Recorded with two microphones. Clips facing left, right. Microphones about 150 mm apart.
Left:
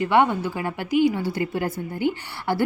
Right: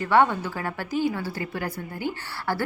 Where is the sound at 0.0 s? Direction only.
15° left (ahead or behind).